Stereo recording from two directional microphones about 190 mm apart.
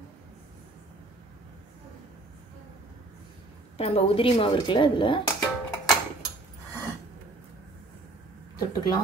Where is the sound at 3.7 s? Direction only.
30° left (ahead or behind).